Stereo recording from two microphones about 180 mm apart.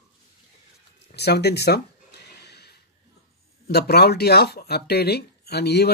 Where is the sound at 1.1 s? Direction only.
65° left (ahead or behind).